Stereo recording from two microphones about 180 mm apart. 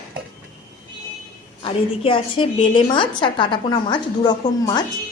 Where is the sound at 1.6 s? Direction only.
30° left (ahead or behind).